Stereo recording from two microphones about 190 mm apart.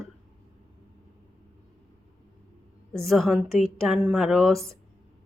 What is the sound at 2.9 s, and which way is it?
A woman's voice, centre (ahead or behind).